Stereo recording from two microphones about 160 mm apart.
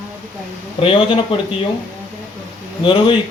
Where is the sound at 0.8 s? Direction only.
35° left (ahead or behind).